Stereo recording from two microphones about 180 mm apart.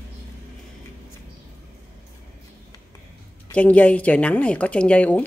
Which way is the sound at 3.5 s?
10° left (ahead or behind).